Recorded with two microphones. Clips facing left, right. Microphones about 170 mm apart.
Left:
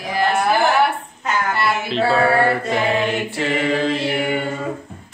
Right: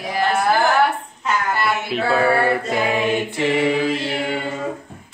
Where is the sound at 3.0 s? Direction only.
15° right (ahead or behind).